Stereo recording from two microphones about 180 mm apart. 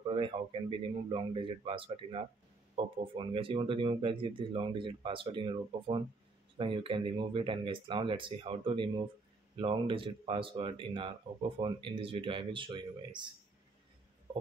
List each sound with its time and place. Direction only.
0.0 s speech: 30° right (ahead or behind)